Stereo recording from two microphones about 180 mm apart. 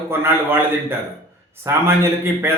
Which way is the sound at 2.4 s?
15° right (ahead or behind).